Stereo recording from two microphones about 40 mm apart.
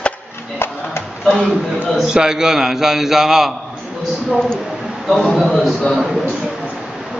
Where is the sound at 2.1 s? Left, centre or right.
Centre.